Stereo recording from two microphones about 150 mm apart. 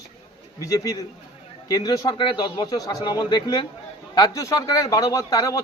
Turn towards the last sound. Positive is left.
turn(degrees=25)  # may be behind; listen again after turning